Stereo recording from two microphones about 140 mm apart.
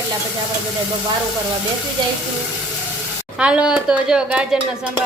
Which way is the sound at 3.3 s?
10° right (ahead or behind).